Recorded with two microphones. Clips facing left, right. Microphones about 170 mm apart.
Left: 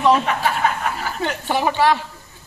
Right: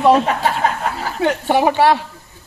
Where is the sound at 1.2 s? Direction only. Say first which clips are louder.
Right 8 dB; 60° right (ahead or behind).